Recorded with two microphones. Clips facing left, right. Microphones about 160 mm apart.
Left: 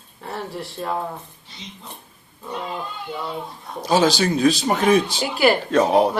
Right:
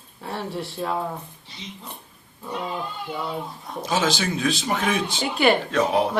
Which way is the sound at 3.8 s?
35° left (ahead or behind).